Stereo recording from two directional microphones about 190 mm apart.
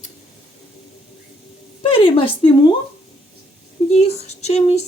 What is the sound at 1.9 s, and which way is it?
Speech, 30° left (ahead or behind).